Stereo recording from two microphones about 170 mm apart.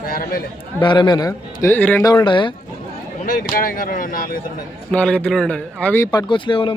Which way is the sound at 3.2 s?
55° left (ahead or behind).